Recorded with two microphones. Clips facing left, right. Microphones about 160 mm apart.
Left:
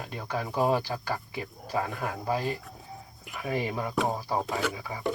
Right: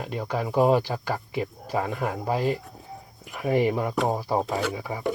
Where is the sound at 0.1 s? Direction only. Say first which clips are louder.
Right 6 dB; 20° right (ahead or behind).